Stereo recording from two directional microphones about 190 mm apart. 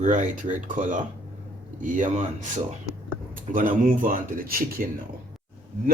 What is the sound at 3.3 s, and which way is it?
Speech, 45° right (ahead or behind).